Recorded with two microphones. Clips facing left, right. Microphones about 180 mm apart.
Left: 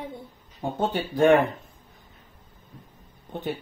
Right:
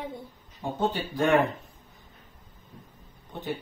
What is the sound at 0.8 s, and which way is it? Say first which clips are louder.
Speech: left 5 dB; 55° left (ahead or behind).